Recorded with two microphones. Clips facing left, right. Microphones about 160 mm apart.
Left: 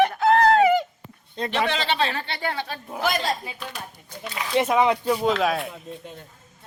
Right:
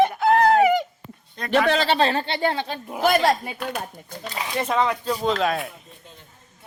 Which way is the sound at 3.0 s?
60° right (ahead or behind).